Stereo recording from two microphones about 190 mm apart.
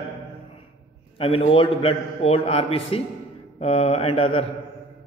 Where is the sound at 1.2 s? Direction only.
30° left (ahead or behind).